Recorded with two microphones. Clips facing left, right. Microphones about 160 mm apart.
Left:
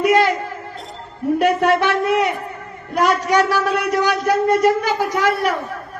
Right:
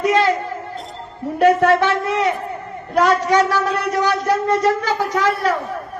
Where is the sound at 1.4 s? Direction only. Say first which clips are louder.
Right 4 dB; 15° left (ahead or behind).